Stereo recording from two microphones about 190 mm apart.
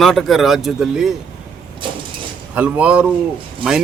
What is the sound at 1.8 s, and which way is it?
Mechanisms, 25° right (ahead or behind).